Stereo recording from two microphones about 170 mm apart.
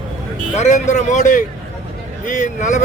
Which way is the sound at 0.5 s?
40° left (ahead or behind).